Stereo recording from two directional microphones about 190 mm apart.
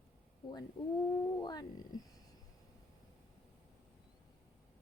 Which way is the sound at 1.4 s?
20° left (ahead or behind).